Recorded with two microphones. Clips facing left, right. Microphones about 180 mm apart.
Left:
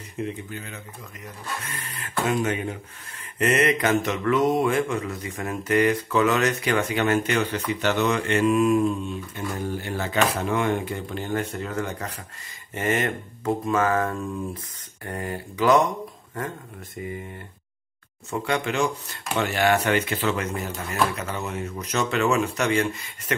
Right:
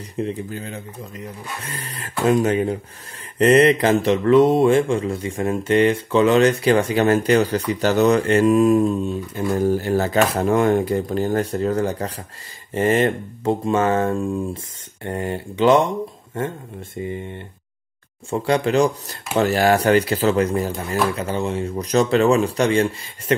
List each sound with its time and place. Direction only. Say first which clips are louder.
0.1 s mantra: right 5 dB; 35° right (ahead or behind)
12.7 s speech: right 7 dB; 30° right (ahead or behind)
18.3 s mantra: right 7 dB; 35° right (ahead or behind)